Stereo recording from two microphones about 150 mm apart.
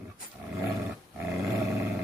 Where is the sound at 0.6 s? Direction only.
15° right (ahead or behind).